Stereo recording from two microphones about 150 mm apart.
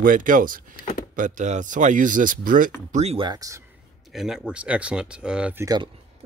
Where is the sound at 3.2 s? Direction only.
25° right (ahead or behind).